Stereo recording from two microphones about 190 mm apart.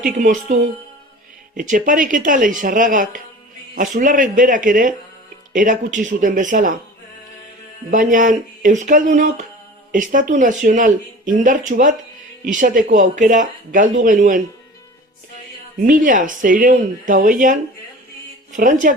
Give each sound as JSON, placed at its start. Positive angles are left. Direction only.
{"t": 0.2, "sound": "speech", "side_deg": -40}
{"t": 1.5, "sound": "speech", "side_deg": -45}
{"t": 7.9, "sound": "speech", "side_deg": -45}
{"t": 15.8, "sound": "speech", "side_deg": -45}